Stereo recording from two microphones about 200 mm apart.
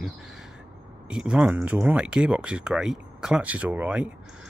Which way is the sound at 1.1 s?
5° right (ahead or behind).